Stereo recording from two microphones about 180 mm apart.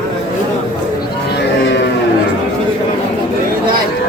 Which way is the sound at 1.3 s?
70° left (ahead or behind).